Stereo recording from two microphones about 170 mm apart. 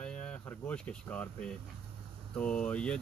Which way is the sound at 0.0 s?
5° left (ahead or behind).